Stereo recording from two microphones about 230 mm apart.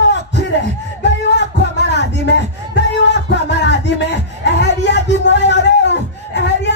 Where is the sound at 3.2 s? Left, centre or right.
Left.